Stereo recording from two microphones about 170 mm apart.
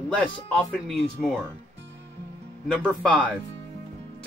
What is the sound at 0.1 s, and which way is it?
Speech, centre (ahead or behind).